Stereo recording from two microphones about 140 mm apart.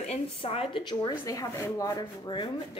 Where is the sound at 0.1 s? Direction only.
45° left (ahead or behind).